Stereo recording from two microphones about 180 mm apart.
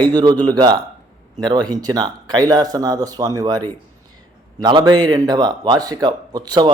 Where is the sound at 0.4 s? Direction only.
20° right (ahead or behind).